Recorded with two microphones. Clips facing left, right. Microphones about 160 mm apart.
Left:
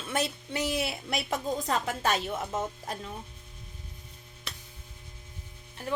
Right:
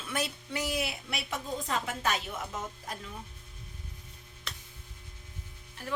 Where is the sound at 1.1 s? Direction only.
40° left (ahead or behind).